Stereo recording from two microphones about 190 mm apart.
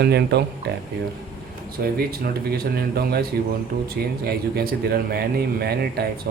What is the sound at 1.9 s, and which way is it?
Speech, 55° right (ahead or behind).